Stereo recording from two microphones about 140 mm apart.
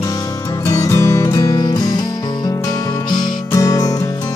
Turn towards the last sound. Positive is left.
turn(degrees=25)  # may be behind; listen again after turning